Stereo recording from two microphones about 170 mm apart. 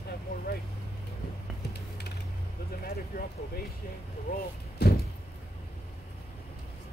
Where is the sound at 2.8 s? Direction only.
60° left (ahead or behind).